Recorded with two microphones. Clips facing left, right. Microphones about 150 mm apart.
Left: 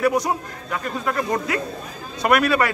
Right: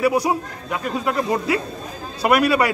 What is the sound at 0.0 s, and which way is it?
A man's voice, 10° right (ahead or behind).